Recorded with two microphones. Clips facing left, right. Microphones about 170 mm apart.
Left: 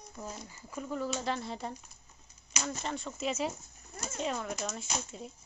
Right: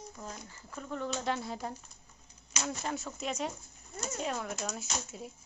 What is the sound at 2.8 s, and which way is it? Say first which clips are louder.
Speech: left 1 dB; 5° right (ahead or behind).